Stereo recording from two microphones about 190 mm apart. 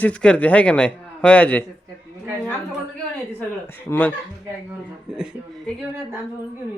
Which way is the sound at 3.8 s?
10° left (ahead or behind).